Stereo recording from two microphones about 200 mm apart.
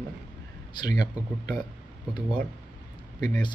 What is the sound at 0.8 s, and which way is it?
Speech, 20° left (ahead or behind).